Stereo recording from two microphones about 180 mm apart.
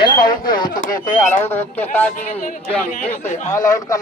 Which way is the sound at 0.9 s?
15° left (ahead or behind).